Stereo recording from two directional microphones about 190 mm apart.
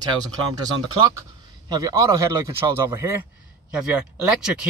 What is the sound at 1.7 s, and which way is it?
A man's voice, 20° right (ahead or behind).